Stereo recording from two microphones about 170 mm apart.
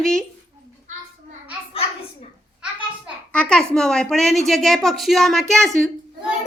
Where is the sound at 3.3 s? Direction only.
5° left (ahead or behind).